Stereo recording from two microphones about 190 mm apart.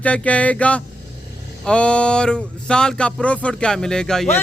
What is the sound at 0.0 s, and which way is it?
Music, 5° left (ahead or behind).